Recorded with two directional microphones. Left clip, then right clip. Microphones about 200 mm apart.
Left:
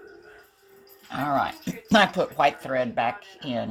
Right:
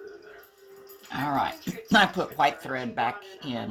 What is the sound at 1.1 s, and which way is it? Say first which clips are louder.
Speech: left 2 dB; 30° left (ahead or behind).